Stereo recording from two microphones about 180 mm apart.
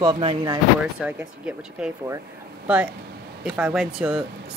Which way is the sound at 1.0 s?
5° right (ahead or behind).